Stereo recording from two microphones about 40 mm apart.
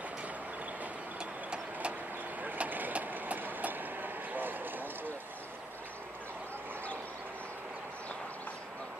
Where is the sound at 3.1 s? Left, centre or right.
Right.